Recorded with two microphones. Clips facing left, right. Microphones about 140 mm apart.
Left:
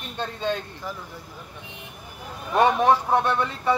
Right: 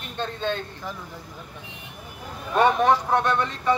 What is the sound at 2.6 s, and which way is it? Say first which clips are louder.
Speech: even; 10° left (ahead or behind).